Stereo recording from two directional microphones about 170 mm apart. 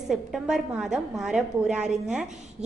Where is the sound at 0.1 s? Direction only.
Centre (ahead or behind).